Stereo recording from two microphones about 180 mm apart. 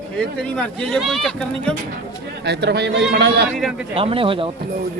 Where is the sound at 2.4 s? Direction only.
70° right (ahead or behind).